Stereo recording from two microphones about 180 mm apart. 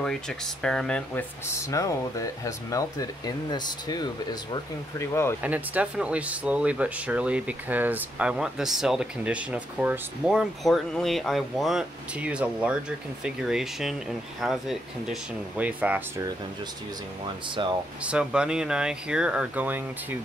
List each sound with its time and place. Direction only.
0.0 s speech: 5° left (ahead or behind)
1.5 s speech: 15° left (ahead or behind)
5.4 s speech: 10° right (ahead or behind)
18.0 s speech: 5° right (ahead or behind)